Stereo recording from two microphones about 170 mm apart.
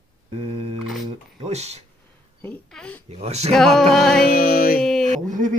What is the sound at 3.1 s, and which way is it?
Speech, 40° right (ahead or behind).